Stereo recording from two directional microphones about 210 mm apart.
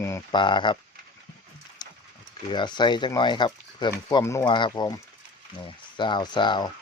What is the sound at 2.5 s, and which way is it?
Speech, 20° left (ahead or behind).